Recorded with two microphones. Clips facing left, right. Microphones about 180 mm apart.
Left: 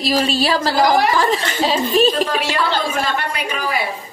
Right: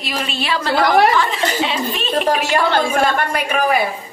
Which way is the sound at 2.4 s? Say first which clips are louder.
Right 3 dB; 50° right (ahead or behind).